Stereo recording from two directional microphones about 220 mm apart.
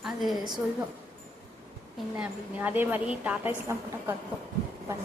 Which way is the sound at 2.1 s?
5° right (ahead or behind).